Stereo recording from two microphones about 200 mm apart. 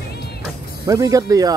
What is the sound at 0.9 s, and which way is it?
Speech, 15° right (ahead or behind).